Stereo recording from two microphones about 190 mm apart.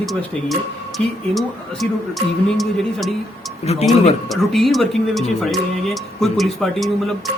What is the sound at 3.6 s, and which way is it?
Speech, 35° left (ahead or behind).